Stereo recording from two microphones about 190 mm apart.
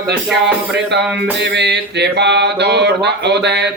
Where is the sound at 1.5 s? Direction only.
65° right (ahead or behind).